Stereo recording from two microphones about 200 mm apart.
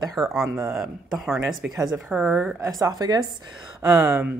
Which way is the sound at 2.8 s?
20° right (ahead or behind).